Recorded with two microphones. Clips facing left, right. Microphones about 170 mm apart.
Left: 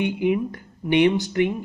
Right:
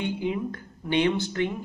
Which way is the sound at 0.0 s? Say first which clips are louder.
Left 6 dB; 15° left (ahead or behind).